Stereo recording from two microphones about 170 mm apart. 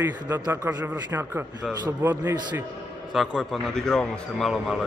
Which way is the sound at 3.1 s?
Centre (ahead or behind).